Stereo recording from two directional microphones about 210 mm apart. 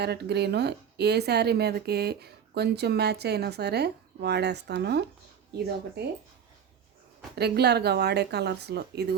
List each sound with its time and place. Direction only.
0.0 s speech: 50° right (ahead or behind)
7.3 s speech: 50° right (ahead or behind)